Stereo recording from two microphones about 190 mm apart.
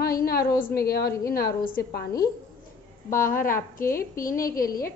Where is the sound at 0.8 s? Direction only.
50° left (ahead or behind).